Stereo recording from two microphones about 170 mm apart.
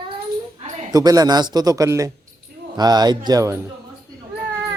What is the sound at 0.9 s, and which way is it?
Speech, 20° right (ahead or behind).